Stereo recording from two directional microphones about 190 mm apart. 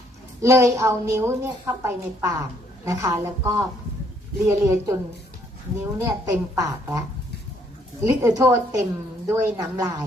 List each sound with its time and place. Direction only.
0.4 s a woman's voice: 15° right (ahead or behind)
8.0 s a woman's voice: 15° right (ahead or behind)